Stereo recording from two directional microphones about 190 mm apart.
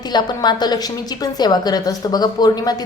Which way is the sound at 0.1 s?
20° left (ahead or behind).